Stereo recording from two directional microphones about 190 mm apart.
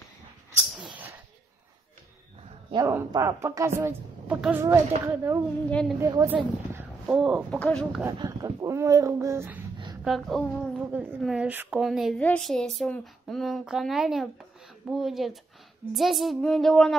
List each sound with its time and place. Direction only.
0.7 s a sound: 5° right (ahead or behind)
2.7 s a woman's voice: 20° right (ahead or behind)
5.7 s a woman's voice: 5° left (ahead or behind)
5.9 s a woman's voice: 15° right (ahead or behind); by 8.0 s 5° left (ahead or behind)
8.0 s a woman's voice: 20° right (ahead or behind)
10.0 s a woman's voice: centre (ahead or behind)
10.8 s a woman's voice: 10° right (ahead or behind)